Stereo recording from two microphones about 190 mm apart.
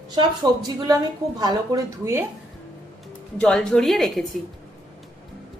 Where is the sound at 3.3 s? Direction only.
5° left (ahead or behind).